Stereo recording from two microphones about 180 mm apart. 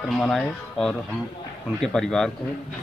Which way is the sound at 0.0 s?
Centre (ahead or behind).